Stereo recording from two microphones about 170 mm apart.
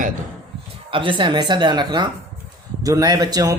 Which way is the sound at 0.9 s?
30° right (ahead or behind).